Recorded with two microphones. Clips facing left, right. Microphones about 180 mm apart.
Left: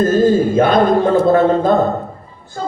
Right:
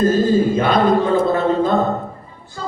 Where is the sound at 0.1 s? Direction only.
50° left (ahead or behind).